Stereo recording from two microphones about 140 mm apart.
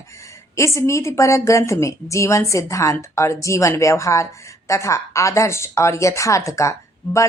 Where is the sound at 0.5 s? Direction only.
20° left (ahead or behind).